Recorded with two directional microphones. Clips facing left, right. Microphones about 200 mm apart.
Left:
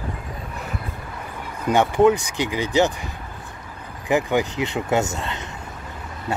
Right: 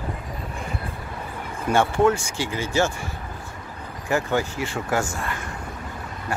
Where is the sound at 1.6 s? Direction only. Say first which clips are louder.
Left 3 dB; 15° left (ahead or behind).